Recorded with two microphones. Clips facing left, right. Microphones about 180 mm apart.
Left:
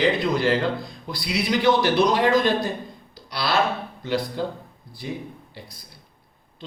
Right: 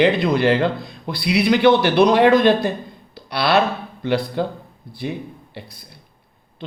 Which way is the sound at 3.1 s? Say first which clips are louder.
Right 7 dB; 65° right (ahead or behind).